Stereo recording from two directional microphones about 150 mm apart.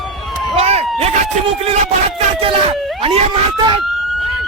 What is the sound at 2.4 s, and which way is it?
Speech, 40° right (ahead or behind).